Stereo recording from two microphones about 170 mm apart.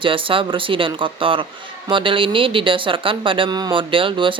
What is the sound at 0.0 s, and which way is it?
Speech, 30° right (ahead or behind).